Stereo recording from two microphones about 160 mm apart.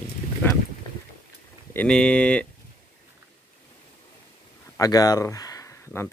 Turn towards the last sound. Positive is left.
turn(degrees=15)  # may be behind; listen again after turning